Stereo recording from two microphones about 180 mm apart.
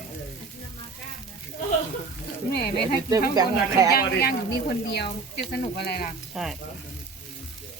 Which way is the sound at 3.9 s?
60° left (ahead or behind).